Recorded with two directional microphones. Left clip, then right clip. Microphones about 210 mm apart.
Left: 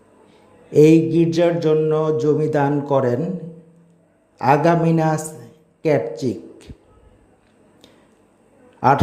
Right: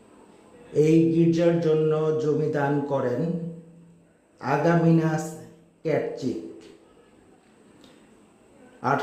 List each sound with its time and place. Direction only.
0.7 s speech: 35° left (ahead or behind)
4.4 s speech: 35° left (ahead or behind)
8.8 s speech: 35° left (ahead or behind)